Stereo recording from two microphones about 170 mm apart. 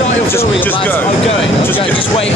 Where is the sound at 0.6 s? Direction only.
10° left (ahead or behind).